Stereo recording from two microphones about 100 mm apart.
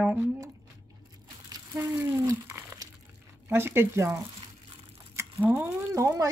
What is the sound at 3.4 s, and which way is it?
Speech, 25° right (ahead or behind).